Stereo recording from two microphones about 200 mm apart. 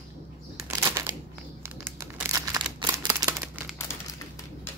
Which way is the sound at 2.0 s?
15° right (ahead or behind).